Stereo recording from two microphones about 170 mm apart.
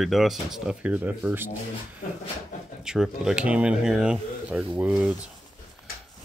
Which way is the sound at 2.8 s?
5° right (ahead or behind).